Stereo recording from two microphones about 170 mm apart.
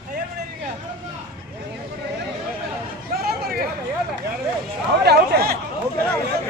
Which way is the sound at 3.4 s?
65° right (ahead or behind).